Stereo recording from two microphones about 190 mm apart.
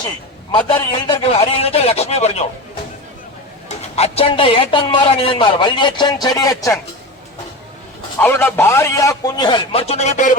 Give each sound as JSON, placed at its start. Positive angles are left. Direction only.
{"t": 0.9, "sound": "a man's voice", "side_deg": 30}
{"t": 3.7, "sound": "a man's voice", "side_deg": 30}
{"t": 8.2, "sound": "a man's voice", "side_deg": 10}